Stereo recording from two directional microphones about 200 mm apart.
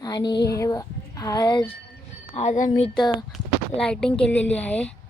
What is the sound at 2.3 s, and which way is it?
Speech, 40° left (ahead or behind).